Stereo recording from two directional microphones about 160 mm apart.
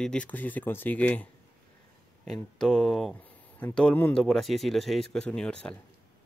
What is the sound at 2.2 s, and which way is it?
Speech, 5° left (ahead or behind).